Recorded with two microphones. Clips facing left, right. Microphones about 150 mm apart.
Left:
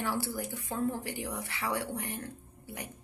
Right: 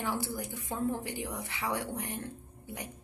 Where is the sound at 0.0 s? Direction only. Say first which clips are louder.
Left 1 dB; 20° right (ahead or behind).